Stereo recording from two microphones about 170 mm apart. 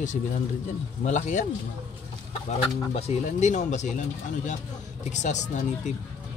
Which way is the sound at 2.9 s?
40° left (ahead or behind).